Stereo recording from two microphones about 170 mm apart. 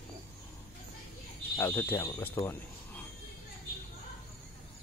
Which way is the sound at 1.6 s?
15° left (ahead or behind).